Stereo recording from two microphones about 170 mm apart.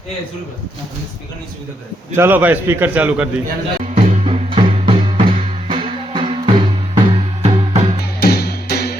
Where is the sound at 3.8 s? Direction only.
40° right (ahead or behind).